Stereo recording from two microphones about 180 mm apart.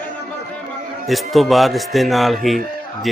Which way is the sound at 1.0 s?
Centre (ahead or behind).